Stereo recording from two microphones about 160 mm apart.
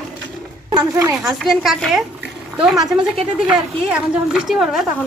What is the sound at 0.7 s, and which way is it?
Speech, 20° right (ahead or behind).